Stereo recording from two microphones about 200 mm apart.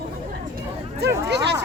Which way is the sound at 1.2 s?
55° right (ahead or behind).